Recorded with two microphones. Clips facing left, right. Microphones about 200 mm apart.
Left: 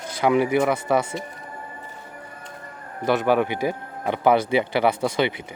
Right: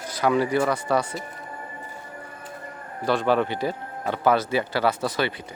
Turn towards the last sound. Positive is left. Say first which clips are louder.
# left 3 dB
turn(degrees=15)  # may be behind; listen again after turning